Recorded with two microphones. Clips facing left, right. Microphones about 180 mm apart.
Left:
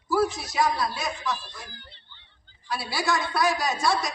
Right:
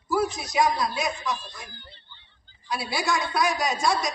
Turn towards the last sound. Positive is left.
turn(degrees=-20)  # may be behind; listen again after turning